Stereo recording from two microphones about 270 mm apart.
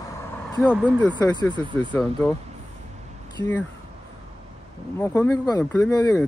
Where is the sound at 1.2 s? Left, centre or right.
Centre.